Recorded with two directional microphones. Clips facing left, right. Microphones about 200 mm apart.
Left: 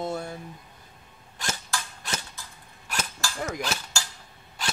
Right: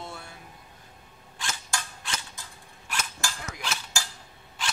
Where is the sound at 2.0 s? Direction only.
40° left (ahead or behind).